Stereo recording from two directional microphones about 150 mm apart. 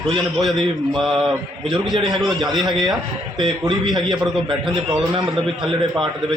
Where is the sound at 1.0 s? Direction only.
5° right (ahead or behind).